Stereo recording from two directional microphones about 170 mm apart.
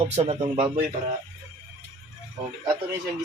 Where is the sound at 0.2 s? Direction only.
40° right (ahead or behind).